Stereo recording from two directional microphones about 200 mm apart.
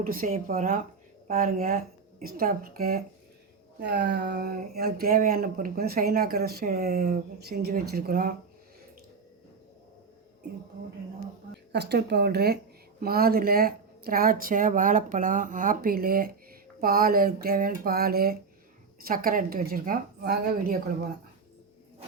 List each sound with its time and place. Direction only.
0.0 s speech: 45° right (ahead or behind)
11.7 s speech: 55° right (ahead or behind)